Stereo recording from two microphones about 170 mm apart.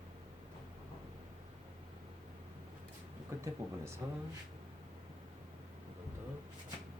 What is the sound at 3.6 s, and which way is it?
Speech, 20° right (ahead or behind).